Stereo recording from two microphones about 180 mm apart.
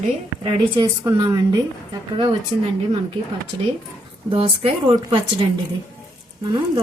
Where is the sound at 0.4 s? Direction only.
20° right (ahead or behind).